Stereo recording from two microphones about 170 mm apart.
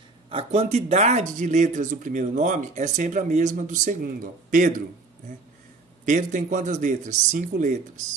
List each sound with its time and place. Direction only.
0.3 s speech: 35° right (ahead or behind)
6.0 s speech: 45° right (ahead or behind)